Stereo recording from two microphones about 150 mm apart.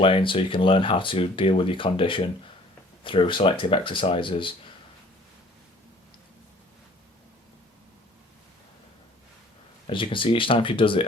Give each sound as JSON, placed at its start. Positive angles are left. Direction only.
{"t": 0.0, "sound": "speech", "side_deg": 35}
{"t": 9.8, "sound": "speech", "side_deg": 35}